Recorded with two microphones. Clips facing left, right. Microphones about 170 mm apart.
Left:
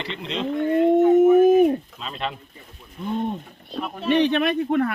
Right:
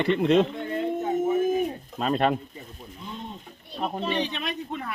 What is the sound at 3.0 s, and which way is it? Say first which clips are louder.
Speech: left 13 dB; 55° left (ahead or behind).